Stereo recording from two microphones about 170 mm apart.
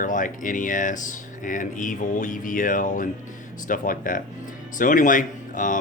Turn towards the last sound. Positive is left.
turn(degrees=50)  # may be behind; listen again after turning